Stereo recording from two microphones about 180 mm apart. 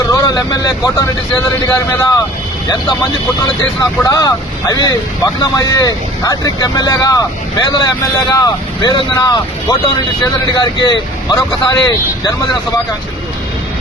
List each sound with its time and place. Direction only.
0.1 s speech: 20° left (ahead or behind)
3.6 s speech: 20° left (ahead or behind)
10.5 s speech: 20° left (ahead or behind)